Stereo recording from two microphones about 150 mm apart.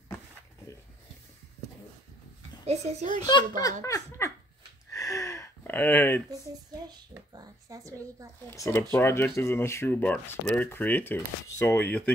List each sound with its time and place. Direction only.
2.6 s speech: 45° right (ahead or behind)
3.3 s speech: 25° left (ahead or behind)
3.8 s dog: 20° left (ahead or behind)
4.9 s a sound: 20° left (ahead or behind)
6.9 s a sound: 25° right (ahead or behind)
8.5 s speech: 15° left (ahead or behind)